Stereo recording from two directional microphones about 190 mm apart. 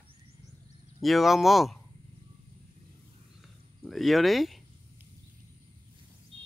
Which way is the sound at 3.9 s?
Centre (ahead or behind).